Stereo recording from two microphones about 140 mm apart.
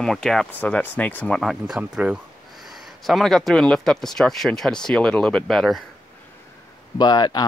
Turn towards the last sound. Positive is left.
turn(degrees=30)  # may be behind; listen again after turning